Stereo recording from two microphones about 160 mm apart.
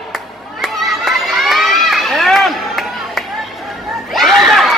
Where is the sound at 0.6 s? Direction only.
Centre (ahead or behind).